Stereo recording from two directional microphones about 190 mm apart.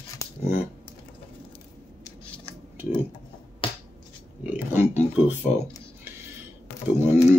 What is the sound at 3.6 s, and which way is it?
Finger snapping, 30° left (ahead or behind).